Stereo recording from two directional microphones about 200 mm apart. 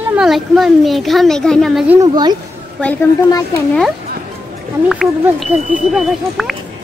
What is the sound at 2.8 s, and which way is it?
Speech, 10° left (ahead or behind).